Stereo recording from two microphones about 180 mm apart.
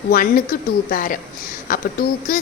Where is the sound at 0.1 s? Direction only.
50° left (ahead or behind).